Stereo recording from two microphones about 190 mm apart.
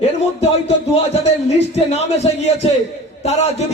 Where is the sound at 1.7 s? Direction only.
35° left (ahead or behind).